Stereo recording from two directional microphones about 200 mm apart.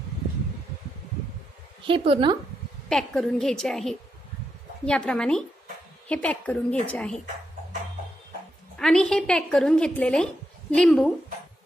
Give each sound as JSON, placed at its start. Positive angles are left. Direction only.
{"t": 1.9, "sound": "speech", "side_deg": -25}
{"t": 2.9, "sound": "a woman's voice", "side_deg": 5}
{"t": 8.7, "sound": "a woman's voice", "side_deg": 5}